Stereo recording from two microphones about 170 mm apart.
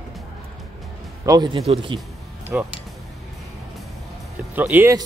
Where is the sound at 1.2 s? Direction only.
25° right (ahead or behind).